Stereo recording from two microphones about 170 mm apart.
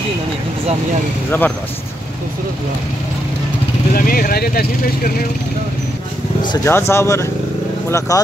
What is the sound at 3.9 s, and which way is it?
Speech, 55° left (ahead or behind).